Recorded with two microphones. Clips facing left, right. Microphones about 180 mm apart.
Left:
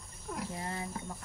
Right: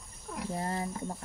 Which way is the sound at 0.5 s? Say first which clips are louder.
Right 5 dB; 40° right (ahead or behind).